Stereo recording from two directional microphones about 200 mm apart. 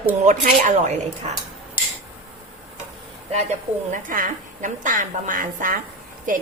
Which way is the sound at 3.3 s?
35° right (ahead or behind).